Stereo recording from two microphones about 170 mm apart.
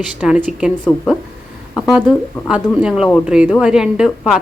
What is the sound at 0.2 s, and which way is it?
Speech, 5° right (ahead or behind).